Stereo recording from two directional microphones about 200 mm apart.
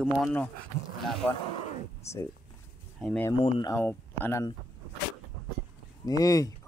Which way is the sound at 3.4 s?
25° left (ahead or behind).